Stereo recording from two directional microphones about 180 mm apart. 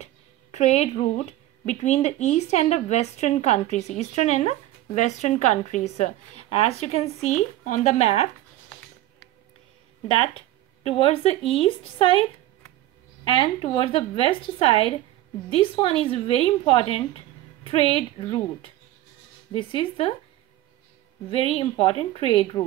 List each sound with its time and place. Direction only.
0.0 s music: 40° left (ahead or behind)
1.7 s speech: 40° left (ahead or behind)
10.9 s a woman's voice: 30° left (ahead or behind)
19.5 s a woman's voice: 30° left (ahead or behind)
21.3 s speech: 30° left (ahead or behind)